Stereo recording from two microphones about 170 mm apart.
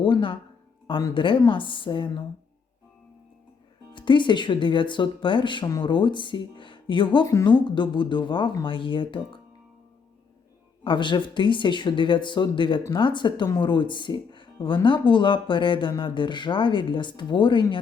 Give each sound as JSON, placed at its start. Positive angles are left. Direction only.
{"t": 0.0, "sound": "speech", "side_deg": 30}
{"t": 3.9, "sound": "speech", "side_deg": 30}
{"t": 10.8, "sound": "speech", "side_deg": 25}